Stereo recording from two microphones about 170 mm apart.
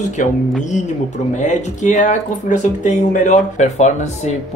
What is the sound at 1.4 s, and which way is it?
Speech, 45° left (ahead or behind).